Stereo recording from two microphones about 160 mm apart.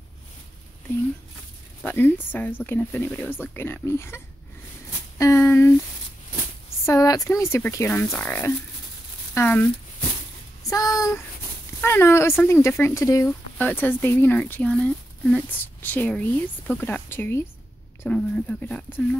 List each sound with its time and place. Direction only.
1.9 s speech: 10° left (ahead or behind)
5.2 s speech: 15° left (ahead or behind)
6.9 s speech: 20° left (ahead or behind)